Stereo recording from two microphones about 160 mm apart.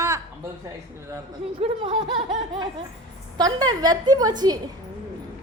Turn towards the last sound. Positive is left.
turn(degrees=-25)  # may be behind; listen again after turning